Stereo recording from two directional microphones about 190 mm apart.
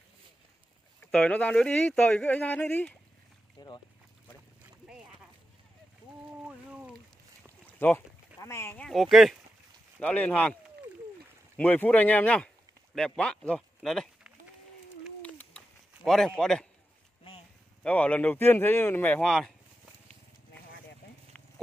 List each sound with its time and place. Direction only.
1.1 s speech: 5° left (ahead or behind)
3.5 s speech: 25° left (ahead or behind)
6.4 s boat: 5° right (ahead or behind)
7.8 s speech: 10° left (ahead or behind)
8.8 s a man's voice: centre (ahead or behind)
15.2 s a sound: 5° left (ahead or behind)
16.0 s a man's voice: centre (ahead or behind)
17.8 s speech: 5° left (ahead or behind)